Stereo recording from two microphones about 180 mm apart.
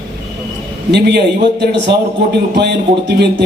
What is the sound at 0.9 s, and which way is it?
Speech, 65° right (ahead or behind).